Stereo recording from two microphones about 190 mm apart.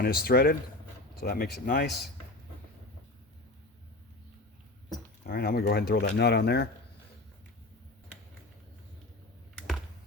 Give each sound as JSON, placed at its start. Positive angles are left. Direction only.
{"t": 0.0, "sound": "speech", "side_deg": 55}
{"t": 5.2, "sound": "speech", "side_deg": 55}